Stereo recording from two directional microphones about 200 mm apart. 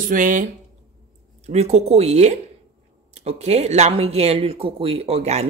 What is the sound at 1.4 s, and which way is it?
Speech, 35° right (ahead or behind).